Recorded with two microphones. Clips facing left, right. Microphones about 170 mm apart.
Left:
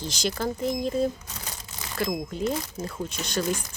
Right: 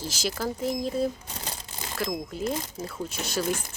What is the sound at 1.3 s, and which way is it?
Crumpling, 30° right (ahead or behind).